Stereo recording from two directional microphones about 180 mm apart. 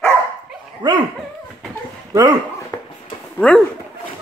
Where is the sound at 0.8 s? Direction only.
25° right (ahead or behind).